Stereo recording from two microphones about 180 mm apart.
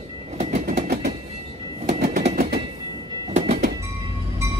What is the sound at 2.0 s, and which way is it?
Train, 45° right (ahead or behind).